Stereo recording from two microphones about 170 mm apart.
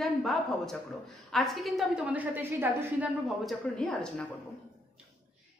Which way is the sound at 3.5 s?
5° left (ahead or behind).